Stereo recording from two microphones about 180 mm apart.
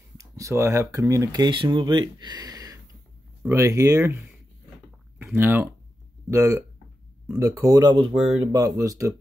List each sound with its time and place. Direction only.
0.2 s speech: 15° right (ahead or behind)